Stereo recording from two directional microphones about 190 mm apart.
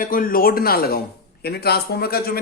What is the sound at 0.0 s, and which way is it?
A man's voice, 45° left (ahead or behind).